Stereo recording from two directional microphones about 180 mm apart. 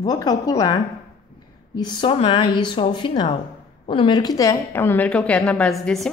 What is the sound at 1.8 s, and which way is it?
A woman's voice, 25° left (ahead or behind).